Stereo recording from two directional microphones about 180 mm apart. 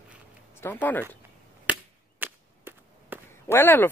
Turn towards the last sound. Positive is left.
turn(degrees=10)  # may be behind; listen again after turning